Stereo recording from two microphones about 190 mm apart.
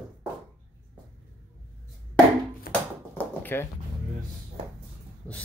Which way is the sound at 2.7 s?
50° left (ahead or behind).